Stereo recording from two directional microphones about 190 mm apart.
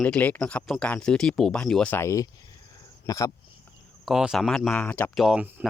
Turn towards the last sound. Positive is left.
turn(degrees=-5)  # may be behind; listen again after turning